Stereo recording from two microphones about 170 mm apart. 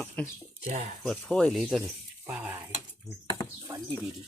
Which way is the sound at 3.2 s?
20° left (ahead or behind).